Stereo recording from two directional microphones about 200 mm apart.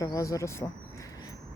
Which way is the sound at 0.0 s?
15° left (ahead or behind).